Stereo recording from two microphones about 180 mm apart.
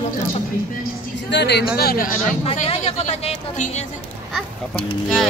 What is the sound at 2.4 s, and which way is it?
Speech, 35° left (ahead or behind).